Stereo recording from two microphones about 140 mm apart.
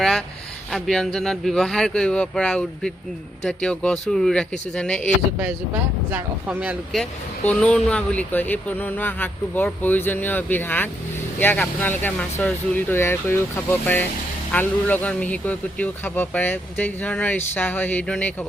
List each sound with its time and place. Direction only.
0.7 s speech: centre (ahead or behind)
6.1 s speech: 10° right (ahead or behind)
6.9 s speech: 5° left (ahead or behind)